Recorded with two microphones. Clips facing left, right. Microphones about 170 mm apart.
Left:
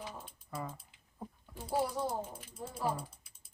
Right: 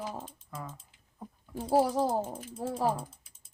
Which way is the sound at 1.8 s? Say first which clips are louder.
Right 7 dB; 90° right.